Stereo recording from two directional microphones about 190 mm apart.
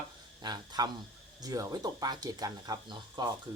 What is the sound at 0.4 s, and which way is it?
Speech, 20° right (ahead or behind).